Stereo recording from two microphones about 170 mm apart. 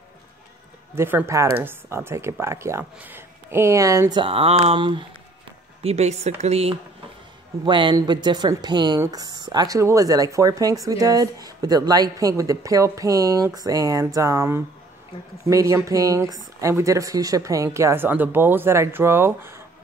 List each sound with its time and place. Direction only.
0.9 s speech: 15° right (ahead or behind)